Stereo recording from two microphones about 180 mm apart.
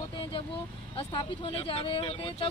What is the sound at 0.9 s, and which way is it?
Speech, 30° left (ahead or behind).